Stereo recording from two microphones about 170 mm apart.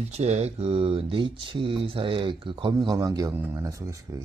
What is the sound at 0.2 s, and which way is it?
Speech, 40° right (ahead or behind).